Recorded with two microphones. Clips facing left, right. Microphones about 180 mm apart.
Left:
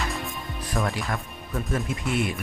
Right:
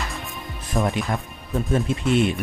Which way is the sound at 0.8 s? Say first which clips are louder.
Right 5 dB; 20° right (ahead or behind).